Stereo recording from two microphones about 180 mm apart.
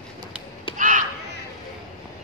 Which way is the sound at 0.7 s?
45° right (ahead or behind).